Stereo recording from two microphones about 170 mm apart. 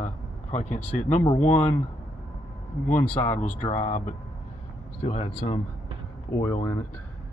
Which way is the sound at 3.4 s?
45° left (ahead or behind).